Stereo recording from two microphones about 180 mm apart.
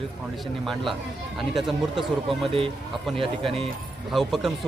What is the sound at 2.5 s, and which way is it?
Speech, 30° right (ahead or behind).